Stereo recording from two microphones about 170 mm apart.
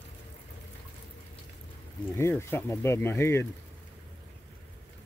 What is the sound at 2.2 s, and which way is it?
Speech, 15° left (ahead or behind).